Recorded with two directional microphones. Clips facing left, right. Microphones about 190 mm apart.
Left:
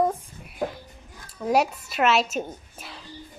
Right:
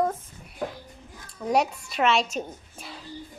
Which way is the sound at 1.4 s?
5° left (ahead or behind).